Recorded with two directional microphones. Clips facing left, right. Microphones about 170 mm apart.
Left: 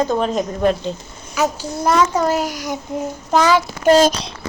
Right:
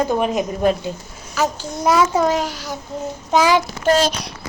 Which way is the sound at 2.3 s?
10° left (ahead or behind).